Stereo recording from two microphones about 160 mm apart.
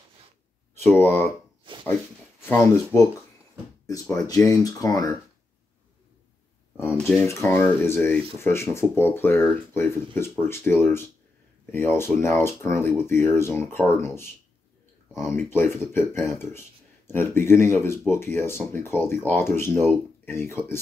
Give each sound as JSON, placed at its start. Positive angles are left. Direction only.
{"t": 0.7, "sound": "speech", "side_deg": 15}
{"t": 1.1, "sound": "a sound", "side_deg": -35}
{"t": 2.4, "sound": "speech", "side_deg": 15}
{"t": 7.2, "sound": "speech", "side_deg": 15}